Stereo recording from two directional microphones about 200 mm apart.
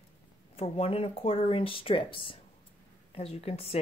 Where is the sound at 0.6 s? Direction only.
30° left (ahead or behind).